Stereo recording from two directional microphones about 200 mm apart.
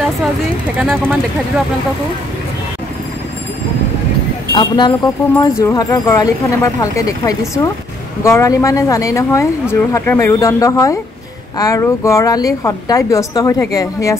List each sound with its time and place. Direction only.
0.7 s speech: 10° right (ahead or behind)
4.6 s speech: 20° left (ahead or behind)